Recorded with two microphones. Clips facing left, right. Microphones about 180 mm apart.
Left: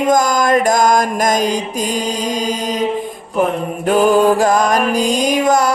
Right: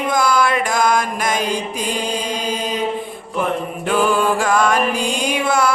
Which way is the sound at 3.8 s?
40° left (ahead or behind).